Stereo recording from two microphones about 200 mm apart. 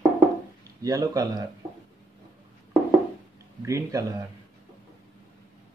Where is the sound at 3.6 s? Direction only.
15° right (ahead or behind).